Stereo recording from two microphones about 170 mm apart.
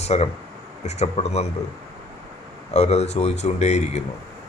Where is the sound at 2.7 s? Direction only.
40° left (ahead or behind).